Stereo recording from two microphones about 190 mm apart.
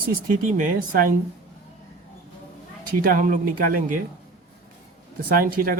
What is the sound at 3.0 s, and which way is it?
Speech, 50° right (ahead or behind).